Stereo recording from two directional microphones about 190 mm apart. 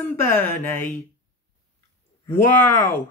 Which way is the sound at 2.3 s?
10° left (ahead or behind).